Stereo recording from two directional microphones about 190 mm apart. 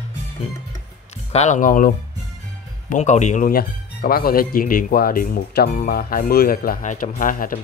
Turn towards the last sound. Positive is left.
turn(degrees=45)  # may be behind; listen again after turning